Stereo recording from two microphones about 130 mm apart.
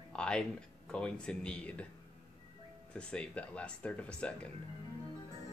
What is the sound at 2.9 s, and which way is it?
Speech, 5° left (ahead or behind).